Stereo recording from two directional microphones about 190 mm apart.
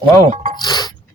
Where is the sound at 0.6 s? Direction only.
20° left (ahead or behind).